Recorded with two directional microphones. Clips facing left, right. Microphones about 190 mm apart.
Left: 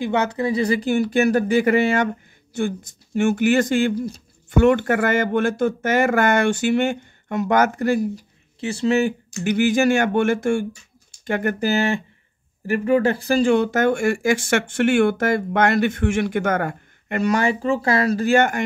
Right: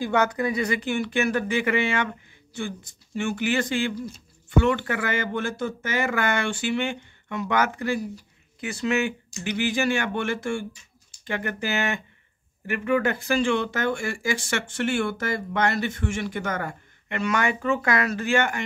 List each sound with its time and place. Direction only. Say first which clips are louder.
0.0 s speech: left 2 dB; 25° left (ahead or behind); by 8.0 s 45° left (ahead or behind)
8.5 s speech: left 6 dB; 30° left (ahead or behind)
9.3 s speech: left 8 dB; 45° left (ahead or behind)
11.7 s speech: left 7 dB; 30° left (ahead or behind)